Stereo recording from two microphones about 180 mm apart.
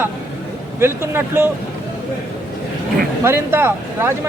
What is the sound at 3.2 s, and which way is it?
Speech, 15° right (ahead or behind).